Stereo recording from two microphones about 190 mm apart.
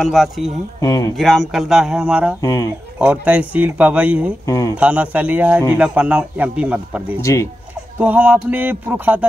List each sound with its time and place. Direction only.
0.0 s speech: centre (ahead or behind)
0.7 s speech: 20° left (ahead or behind)
1.1 s speech: centre (ahead or behind)
2.4 s speech: 15° left (ahead or behind)
3.0 s a man's voice: 5° right (ahead or behind)
4.5 s speech: 15° left (ahead or behind)
4.7 s a man's voice: 5° right (ahead or behind)
7.2 s speech: 15° left (ahead or behind)
8.0 s a man's voice: 10° right (ahead or behind)